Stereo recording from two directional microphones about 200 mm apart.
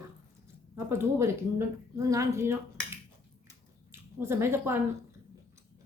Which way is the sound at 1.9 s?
15° right (ahead or behind).